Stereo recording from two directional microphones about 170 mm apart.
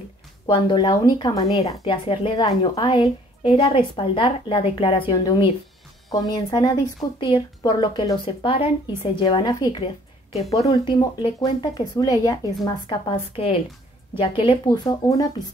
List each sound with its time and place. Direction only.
0.7 s a woman's voice: 30° left (ahead or behind)
15.0 s a woman's voice: 20° left (ahead or behind)